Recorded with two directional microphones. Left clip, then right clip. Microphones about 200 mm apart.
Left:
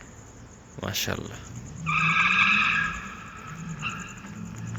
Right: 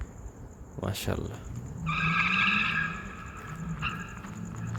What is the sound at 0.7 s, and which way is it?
Speech, 10° right (ahead or behind).